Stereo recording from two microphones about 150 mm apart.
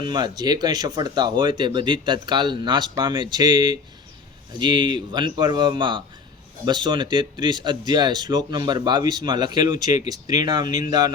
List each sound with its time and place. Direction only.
0.1 s speech: 30° right (ahead or behind)